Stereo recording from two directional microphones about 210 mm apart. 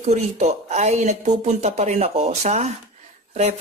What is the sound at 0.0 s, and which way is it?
Speech, 30° right (ahead or behind).